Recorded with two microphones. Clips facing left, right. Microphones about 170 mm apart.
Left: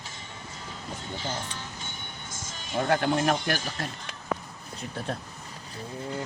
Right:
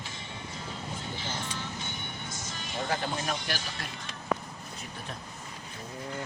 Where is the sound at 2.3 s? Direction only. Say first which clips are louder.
Left 9 dB; 50° left (ahead or behind).